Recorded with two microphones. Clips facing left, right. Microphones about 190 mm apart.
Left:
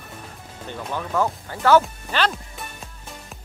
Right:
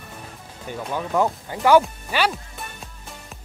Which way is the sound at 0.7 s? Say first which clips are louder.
Right 2 dB; 10° right (ahead or behind).